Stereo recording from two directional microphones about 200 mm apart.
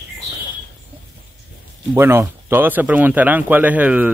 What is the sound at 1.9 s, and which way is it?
Speech, 10° right (ahead or behind).